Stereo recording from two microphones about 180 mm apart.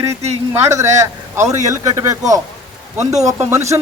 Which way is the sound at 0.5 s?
15° right (ahead or behind).